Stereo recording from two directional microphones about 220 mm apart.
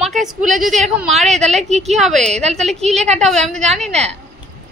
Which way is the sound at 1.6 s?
30° right (ahead or behind).